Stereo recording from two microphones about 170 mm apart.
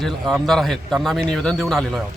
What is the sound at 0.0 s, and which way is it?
Speech, centre (ahead or behind).